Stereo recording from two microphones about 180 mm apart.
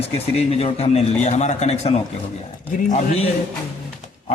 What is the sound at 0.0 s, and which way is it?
A man's voice, 35° left (ahead or behind).